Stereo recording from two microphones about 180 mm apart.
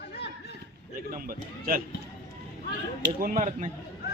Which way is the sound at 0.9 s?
50° right (ahead or behind).